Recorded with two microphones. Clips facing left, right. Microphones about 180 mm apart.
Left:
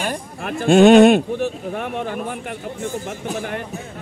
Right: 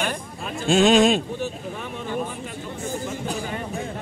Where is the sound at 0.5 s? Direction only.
60° left (ahead or behind).